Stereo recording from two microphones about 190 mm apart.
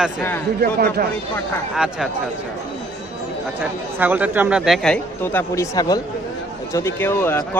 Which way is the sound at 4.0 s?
10° right (ahead or behind).